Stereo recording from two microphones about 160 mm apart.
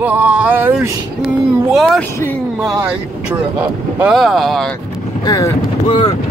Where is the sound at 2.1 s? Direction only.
10° left (ahead or behind).